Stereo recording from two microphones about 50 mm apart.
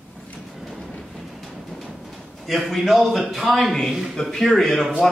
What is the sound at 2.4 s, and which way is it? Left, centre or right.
A man's voice, centre.